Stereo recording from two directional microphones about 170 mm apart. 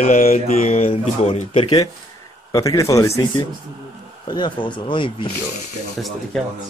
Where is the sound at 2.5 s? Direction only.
20° left (ahead or behind).